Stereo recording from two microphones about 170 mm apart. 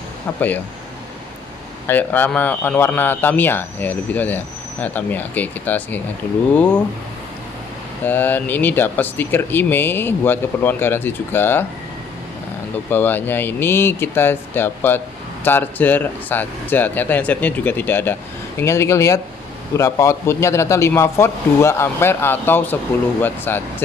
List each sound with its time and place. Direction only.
1.9 s speech: 10° left (ahead or behind)
8.0 s speech: 10° left (ahead or behind)
12.9 s speech: 10° left (ahead or behind)